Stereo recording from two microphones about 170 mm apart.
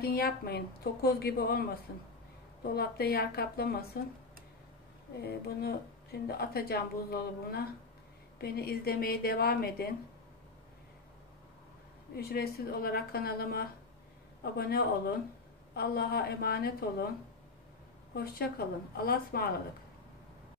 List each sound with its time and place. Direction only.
0.0 s a woman's voice: 65° left (ahead or behind)
2.6 s a woman's voice: 65° left (ahead or behind)
5.2 s a woman's voice: 65° left (ahead or behind)
12.2 s a woman's voice: 65° left (ahead or behind)
18.1 s a woman's voice: 65° left (ahead or behind)